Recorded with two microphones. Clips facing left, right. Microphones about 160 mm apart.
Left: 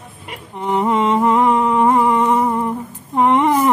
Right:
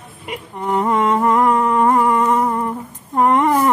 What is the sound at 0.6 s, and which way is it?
Speech, 10° left (ahead or behind).